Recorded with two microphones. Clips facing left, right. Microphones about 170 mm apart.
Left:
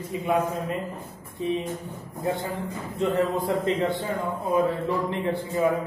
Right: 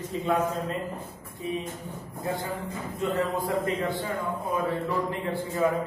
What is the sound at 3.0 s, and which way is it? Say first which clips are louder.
Speech: left 4 dB; 25° left (ahead or behind).